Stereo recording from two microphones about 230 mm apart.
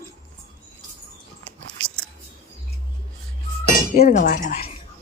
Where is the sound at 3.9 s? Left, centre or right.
Left.